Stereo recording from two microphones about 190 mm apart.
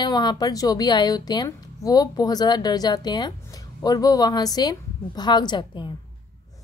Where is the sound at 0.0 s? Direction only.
20° left (ahead or behind).